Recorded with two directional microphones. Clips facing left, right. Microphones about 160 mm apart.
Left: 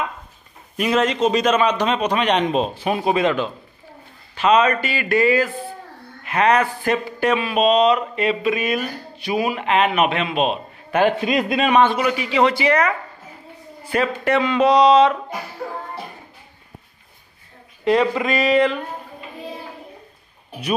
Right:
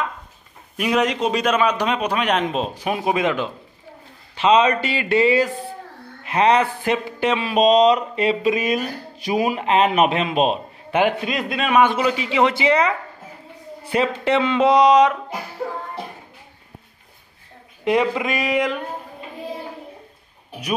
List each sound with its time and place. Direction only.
0.7 s a man's voice: 10° right (ahead or behind)
4.4 s speech: 25° right (ahead or behind)
7.4 s speech: 35° right (ahead or behind)
10.9 s a man's voice: 15° right (ahead or behind)
11.2 s a man's voice: centre (ahead or behind)
11.8 s speech: 20° right (ahead or behind)
17.8 s a man's voice: 15° right (ahead or behind)